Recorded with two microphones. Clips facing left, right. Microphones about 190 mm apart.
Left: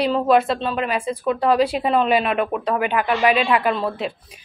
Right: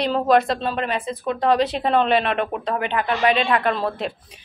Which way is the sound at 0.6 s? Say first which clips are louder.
Left 1 dB; 35° right (ahead or behind).